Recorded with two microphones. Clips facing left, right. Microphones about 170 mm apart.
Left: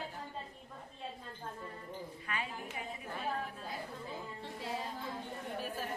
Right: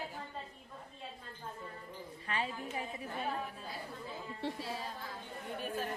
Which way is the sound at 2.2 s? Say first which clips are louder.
Right 4 dB; 30° right (ahead or behind).